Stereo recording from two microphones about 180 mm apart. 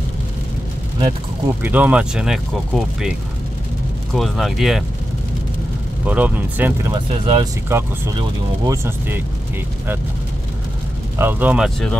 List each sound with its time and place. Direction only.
1.6 s speech: 10° right (ahead or behind)
4.1 s speech: centre (ahead or behind)
6.0 s speech: 10° right (ahead or behind)
11.1 s speech: 10° right (ahead or behind)